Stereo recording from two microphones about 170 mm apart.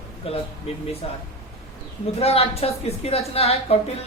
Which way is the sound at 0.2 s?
35° left (ahead or behind).